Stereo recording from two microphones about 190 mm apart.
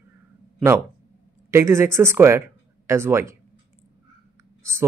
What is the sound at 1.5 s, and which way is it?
Speech, 15° right (ahead or behind).